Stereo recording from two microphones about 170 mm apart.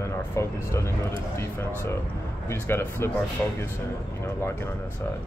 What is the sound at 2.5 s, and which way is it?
Speech, 15° left (ahead or behind).